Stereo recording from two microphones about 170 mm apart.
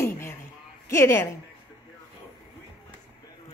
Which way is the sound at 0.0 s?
15° left (ahead or behind).